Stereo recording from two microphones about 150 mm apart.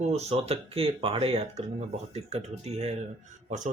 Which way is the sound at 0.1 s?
40° right (ahead or behind).